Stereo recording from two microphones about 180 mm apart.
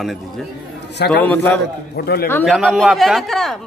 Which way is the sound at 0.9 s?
70° left (ahead or behind).